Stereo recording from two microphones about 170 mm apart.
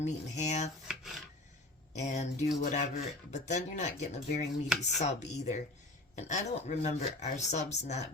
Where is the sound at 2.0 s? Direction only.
45° left (ahead or behind).